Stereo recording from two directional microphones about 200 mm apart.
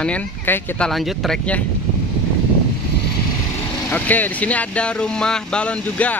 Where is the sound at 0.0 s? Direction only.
5° left (ahead or behind).